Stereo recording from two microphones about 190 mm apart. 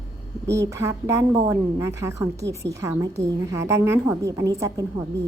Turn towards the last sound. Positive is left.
turn(degrees=-15)  # may be behind; listen again after turning